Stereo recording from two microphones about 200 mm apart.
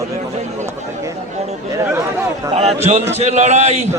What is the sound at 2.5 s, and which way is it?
A man's voice, 35° right (ahead or behind).